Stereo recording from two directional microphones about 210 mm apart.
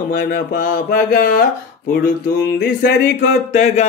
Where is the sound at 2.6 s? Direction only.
50° left (ahead or behind).